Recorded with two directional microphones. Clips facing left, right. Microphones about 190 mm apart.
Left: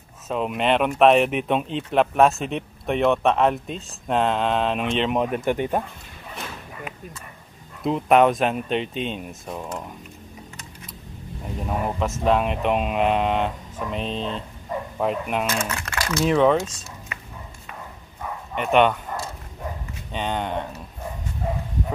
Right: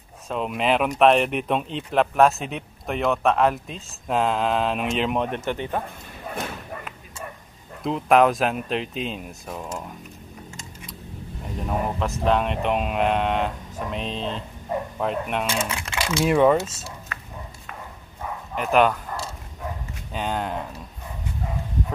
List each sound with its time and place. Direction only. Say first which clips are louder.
0.3 s speech: left 1 dB; centre (ahead or behind)
5.5 s speech: left 4 dB; 15° left (ahead or behind)
6.2 s a sound: right 5 dB; 50° right (ahead or behind)
7.8 s speech: left 1 dB; centre (ahead or behind)
11.6 s speech: even; centre (ahead or behind)
15.7 s speech: even; 15° right (ahead or behind)
18.5 s speech: left 1 dB; centre (ahead or behind)
20.1 s speech: left 1 dB; 5° right (ahead or behind)